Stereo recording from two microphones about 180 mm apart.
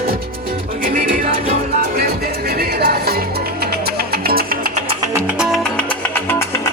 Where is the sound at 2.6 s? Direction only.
60° right (ahead or behind).